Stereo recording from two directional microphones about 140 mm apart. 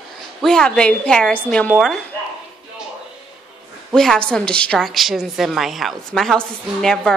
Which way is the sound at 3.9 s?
5° left (ahead or behind).